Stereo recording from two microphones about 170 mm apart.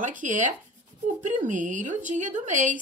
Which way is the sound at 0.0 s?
50° right (ahead or behind).